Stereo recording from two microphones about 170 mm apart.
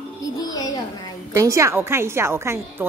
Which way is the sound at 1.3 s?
20° right (ahead or behind).